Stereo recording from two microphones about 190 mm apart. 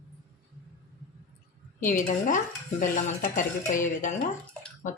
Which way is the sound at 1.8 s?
45° left (ahead or behind).